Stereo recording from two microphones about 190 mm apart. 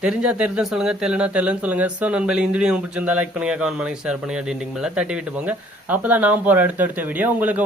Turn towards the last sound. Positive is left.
turn(degrees=-10)  # may be behind; listen again after turning